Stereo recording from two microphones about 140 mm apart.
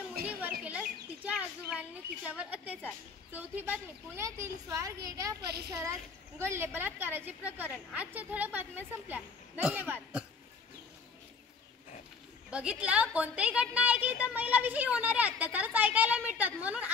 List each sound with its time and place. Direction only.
0.2 s bird: 10° right (ahead or behind)
0.7 s speech: 10° right (ahead or behind)
12.4 s speech: 10° right (ahead or behind)